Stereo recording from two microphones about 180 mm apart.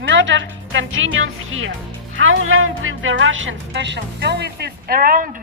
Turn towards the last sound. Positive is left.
turn(degrees=-50)  # may be behind; listen again after turning